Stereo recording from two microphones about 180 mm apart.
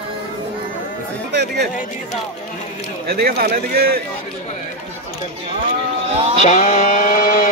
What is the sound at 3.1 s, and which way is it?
Speech, 60° right (ahead or behind).